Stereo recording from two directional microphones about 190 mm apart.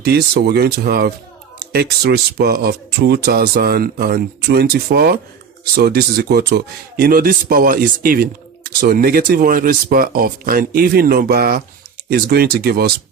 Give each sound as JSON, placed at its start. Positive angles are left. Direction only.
{"t": 0.0, "sound": "speech", "side_deg": -60}